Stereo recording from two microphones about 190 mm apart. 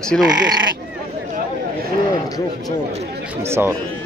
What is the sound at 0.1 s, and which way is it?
Speech, 5° left (ahead or behind).